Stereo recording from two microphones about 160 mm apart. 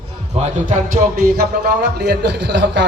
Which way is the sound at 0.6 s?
60° right (ahead or behind).